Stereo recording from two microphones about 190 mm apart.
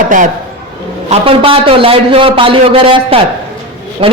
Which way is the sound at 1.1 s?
30° right (ahead or behind).